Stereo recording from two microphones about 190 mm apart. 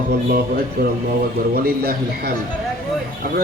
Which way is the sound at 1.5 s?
55° right (ahead or behind).